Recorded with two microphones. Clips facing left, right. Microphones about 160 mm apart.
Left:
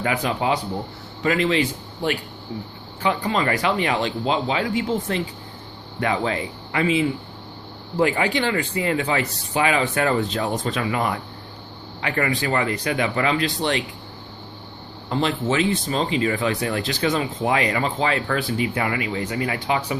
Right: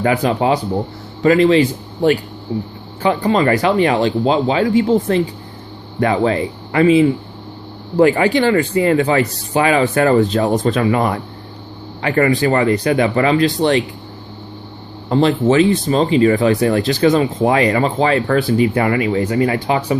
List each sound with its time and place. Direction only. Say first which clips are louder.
0.0 s speech: right 7 dB; 40° right (ahead or behind)
15.1 s speech: right 9 dB; 40° right (ahead or behind)